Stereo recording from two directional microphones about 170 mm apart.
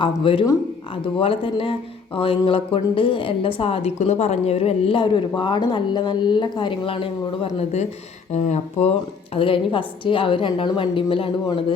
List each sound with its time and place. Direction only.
0.0 s a woman's voice: 30° left (ahead or behind)